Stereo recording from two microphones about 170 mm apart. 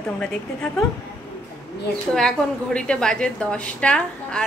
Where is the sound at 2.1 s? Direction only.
5° left (ahead or behind).